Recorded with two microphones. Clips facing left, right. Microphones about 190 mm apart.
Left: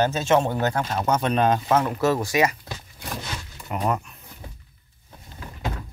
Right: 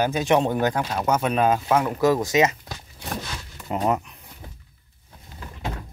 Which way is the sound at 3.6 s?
25° right (ahead or behind).